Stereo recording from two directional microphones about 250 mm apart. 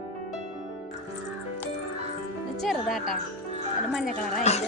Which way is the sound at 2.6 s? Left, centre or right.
Centre.